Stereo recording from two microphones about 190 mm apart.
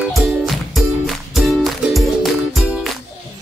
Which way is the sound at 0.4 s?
Centre (ahead or behind).